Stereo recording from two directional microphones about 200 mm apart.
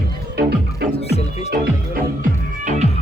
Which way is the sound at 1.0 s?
30° left (ahead or behind).